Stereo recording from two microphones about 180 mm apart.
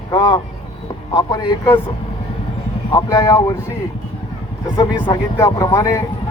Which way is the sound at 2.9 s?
20° left (ahead or behind).